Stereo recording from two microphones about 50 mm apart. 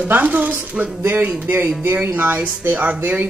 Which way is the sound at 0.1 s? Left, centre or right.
Right.